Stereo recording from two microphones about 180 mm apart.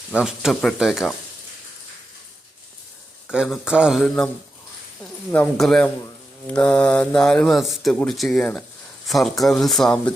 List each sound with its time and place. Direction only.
0.1 s speech: 5° right (ahead or behind)
3.3 s speech: centre (ahead or behind)
5.3 s speech: 5° left (ahead or behind)